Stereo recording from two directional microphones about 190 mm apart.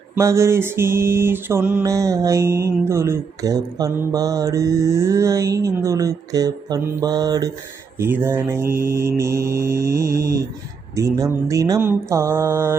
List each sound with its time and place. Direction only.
0.2 s mantra: 15° right (ahead or behind)